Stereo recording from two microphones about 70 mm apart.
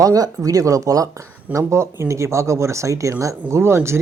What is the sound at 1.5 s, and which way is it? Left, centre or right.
Speech, right.